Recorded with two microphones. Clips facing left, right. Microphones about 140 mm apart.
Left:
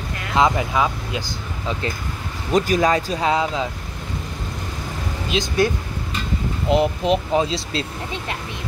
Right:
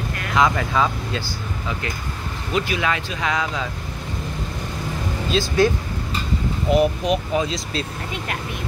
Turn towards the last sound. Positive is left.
turn(degrees=30)  # may be behind; listen again after turning